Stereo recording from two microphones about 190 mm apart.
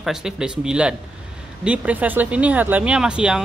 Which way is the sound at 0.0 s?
Centre (ahead or behind).